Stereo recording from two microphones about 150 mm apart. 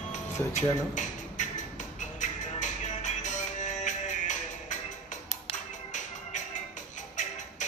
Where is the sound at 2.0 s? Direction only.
55° left (ahead or behind).